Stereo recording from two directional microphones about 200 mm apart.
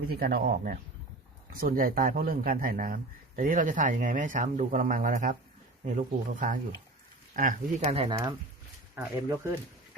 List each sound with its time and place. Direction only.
0.1 s speech: 50° right (ahead or behind); by 8.1 s 30° right (ahead or behind)
9.0 s speech: 15° right (ahead or behind)